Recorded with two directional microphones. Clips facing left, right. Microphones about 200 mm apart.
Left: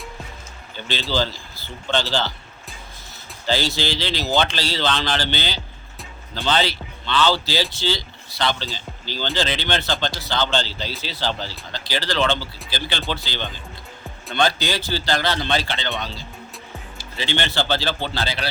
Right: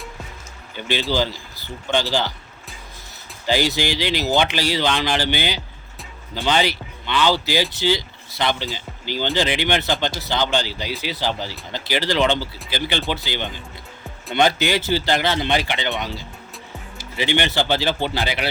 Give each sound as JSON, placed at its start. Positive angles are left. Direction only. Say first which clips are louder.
{"t": 0.8, "sound": "speech", "louder": "right 2 dB", "side_deg": -15}
{"t": 3.4, "sound": "speech", "louder": "right 2 dB", "side_deg": -15}